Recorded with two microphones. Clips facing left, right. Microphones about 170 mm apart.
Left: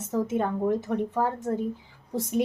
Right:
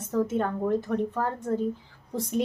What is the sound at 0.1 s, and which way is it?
Speech, 10° left (ahead or behind).